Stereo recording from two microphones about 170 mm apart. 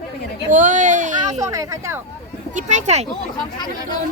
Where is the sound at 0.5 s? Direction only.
50° right (ahead or behind).